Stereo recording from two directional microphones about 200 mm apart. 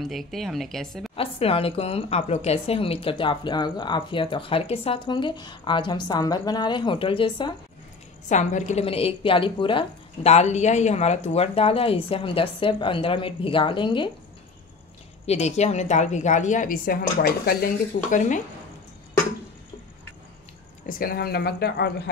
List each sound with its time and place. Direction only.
0.0 s speech: centre (ahead or behind)
1.1 s a woman's voice: 30° left (ahead or behind)
8.3 s a woman's voice: 40° left (ahead or behind)
15.2 s a woman's voice: 35° left (ahead or behind)
18.1 s a woman's voice: 40° left (ahead or behind)
20.8 s speech: 45° left (ahead or behind)